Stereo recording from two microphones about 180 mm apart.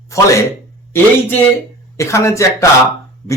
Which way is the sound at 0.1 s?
15° left (ahead or behind).